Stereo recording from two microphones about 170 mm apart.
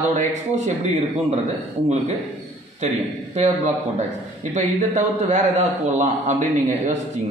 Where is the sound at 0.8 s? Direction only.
40° right (ahead or behind).